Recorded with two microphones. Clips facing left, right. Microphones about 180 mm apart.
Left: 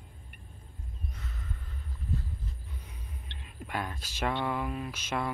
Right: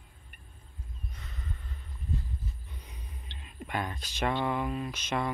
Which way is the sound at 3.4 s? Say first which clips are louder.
Right 1 dB; 5° left (ahead or behind).